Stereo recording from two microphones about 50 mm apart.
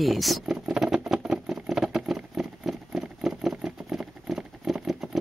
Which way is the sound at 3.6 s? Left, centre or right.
Centre.